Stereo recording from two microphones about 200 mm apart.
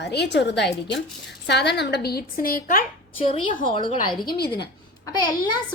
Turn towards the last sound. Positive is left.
turn(degrees=20)  # may be behind; listen again after turning